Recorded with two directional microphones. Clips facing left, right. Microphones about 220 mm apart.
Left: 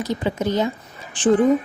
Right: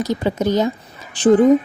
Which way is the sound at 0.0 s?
40° right (ahead or behind).